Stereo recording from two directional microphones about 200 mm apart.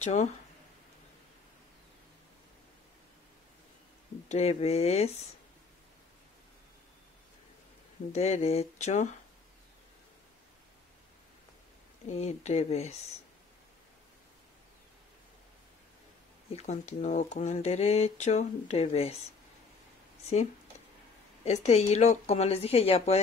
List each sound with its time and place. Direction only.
0.0 s speech: 35° left (ahead or behind)
4.3 s speech: 30° left (ahead or behind)
8.1 s speech: 30° left (ahead or behind)
12.1 s speech: 35° left (ahead or behind)
16.5 s speech: 35° left (ahead or behind)
21.5 s speech: 35° left (ahead or behind)